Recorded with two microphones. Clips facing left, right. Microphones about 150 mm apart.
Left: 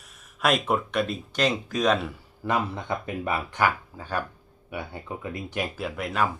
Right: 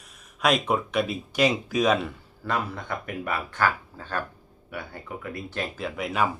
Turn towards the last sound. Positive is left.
turn(degrees=0)  # may be behind; listen again after turning